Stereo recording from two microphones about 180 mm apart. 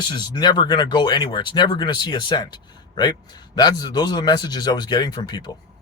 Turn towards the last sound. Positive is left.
turn(degrees=25)  # may be behind; listen again after turning